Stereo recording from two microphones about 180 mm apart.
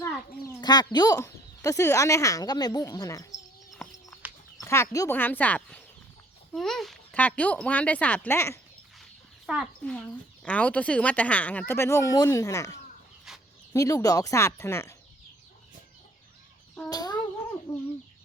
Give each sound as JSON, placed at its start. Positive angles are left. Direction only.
{"t": 0.0, "sound": "speech", "side_deg": 20}
{"t": 3.8, "sound": "bird", "side_deg": 5}
{"t": 4.6, "sound": "speech", "side_deg": 15}
{"t": 9.5, "sound": "speech", "side_deg": 0}
{"t": 16.9, "sound": "a sound", "side_deg": 20}
{"t": 17.7, "sound": "chicken", "side_deg": 10}